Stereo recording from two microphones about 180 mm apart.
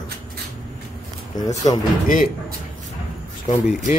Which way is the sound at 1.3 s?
20° left (ahead or behind).